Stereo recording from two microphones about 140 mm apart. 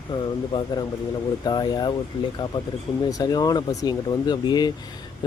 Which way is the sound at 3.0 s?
25° left (ahead or behind).